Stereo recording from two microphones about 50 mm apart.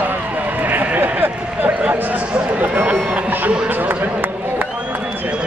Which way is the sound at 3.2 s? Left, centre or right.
Right.